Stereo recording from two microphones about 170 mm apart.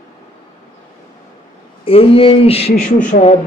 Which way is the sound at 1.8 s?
35° left (ahead or behind).